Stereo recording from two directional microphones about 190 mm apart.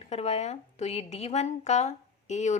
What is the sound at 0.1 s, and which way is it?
A woman's voice, 35° left (ahead or behind).